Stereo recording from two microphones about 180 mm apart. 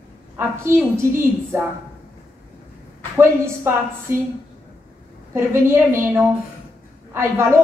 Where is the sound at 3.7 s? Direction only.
15° right (ahead or behind).